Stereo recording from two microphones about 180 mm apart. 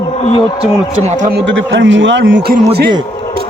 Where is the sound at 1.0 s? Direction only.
45° right (ahead or behind).